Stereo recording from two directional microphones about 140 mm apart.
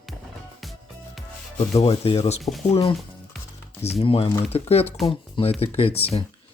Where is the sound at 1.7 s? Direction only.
45° left (ahead or behind).